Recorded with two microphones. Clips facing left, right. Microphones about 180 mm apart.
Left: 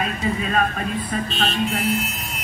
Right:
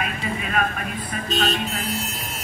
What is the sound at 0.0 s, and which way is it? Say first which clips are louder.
Speech: left 4 dB; 30° left (ahead or behind).